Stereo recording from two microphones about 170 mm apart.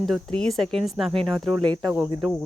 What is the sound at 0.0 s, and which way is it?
Speech, 5° left (ahead or behind).